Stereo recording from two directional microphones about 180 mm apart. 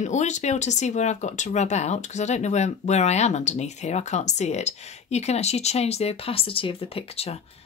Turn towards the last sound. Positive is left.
turn(degrees=35)  # may be behind; listen again after turning